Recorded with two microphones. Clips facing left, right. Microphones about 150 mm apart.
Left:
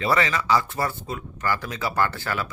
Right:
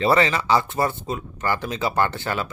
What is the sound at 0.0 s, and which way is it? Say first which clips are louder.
Speech: right 4 dB; 30° right (ahead or behind).